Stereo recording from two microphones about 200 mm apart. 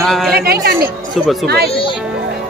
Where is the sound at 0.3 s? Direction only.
50° right (ahead or behind).